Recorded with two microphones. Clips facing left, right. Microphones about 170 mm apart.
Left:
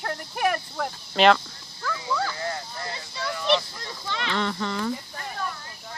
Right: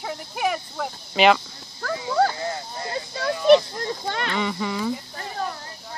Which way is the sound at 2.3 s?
25° right (ahead or behind).